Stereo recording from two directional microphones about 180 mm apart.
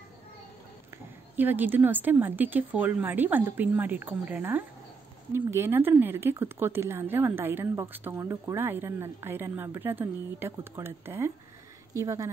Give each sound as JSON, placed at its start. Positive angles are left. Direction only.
{"t": 1.3, "sound": "speech", "side_deg": -10}